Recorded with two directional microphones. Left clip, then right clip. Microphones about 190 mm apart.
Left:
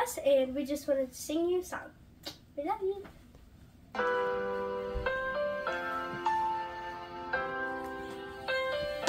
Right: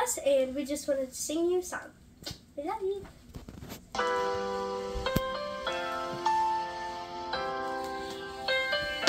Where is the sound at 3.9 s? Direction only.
50° right (ahead or behind).